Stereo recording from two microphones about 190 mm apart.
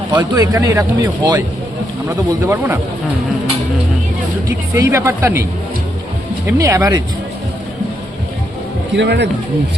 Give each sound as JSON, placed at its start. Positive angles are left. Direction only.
{"t": 0.2, "sound": "a man's voice", "side_deg": -15}
{"t": 2.4, "sound": "a man's voice", "side_deg": -15}
{"t": 4.4, "sound": "a man's voice", "side_deg": -15}
{"t": 6.6, "sound": "a man's voice", "side_deg": -15}
{"t": 9.0, "sound": "speech", "side_deg": -65}